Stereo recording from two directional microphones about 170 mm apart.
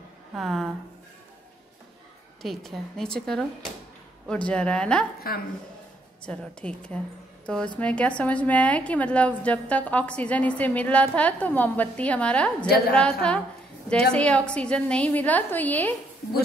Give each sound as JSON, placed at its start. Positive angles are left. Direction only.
{"t": 0.3, "sound": "speech", "side_deg": 0}
{"t": 2.4, "sound": "a woman's voice", "side_deg": 0}
{"t": 5.2, "sound": "a woman's voice", "side_deg": 60}
{"t": 6.2, "sound": "a woman's voice", "side_deg": 5}